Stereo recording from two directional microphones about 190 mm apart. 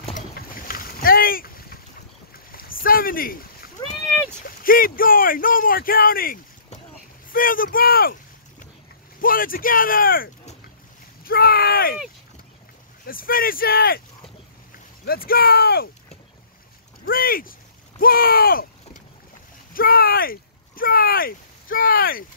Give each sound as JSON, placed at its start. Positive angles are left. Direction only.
{"t": 0.3, "sound": "boat", "side_deg": 50}
{"t": 2.3, "sound": "rowboat", "side_deg": 50}
{"t": 4.5, "sound": "speech", "side_deg": 50}
{"t": 13.0, "sound": "speech", "side_deg": 50}
{"t": 15.0, "sound": "speech", "side_deg": 50}
{"t": 17.0, "sound": "speech", "side_deg": 50}